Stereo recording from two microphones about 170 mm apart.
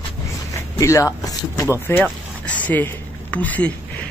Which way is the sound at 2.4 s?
10° left (ahead or behind).